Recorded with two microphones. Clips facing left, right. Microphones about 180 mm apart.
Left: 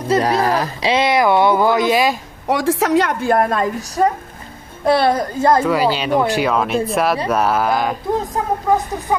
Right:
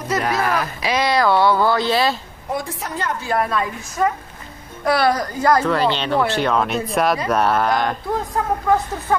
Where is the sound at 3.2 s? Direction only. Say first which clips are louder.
Left 5 dB; 45° left (ahead or behind).